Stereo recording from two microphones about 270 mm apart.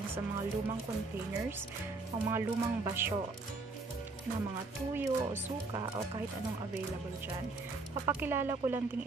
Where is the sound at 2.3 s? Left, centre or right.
Centre.